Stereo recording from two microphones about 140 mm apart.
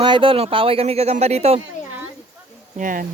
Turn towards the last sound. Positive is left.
turn(degrees=-75)  # may be behind; listen again after turning